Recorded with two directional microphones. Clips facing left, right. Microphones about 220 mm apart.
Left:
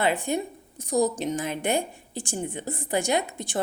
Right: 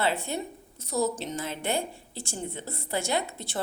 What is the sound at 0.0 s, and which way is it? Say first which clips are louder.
A woman's voice: left 4 dB; 15° left (ahead or behind).